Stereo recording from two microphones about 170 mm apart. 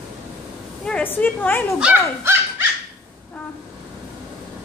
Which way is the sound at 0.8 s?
10° left (ahead or behind).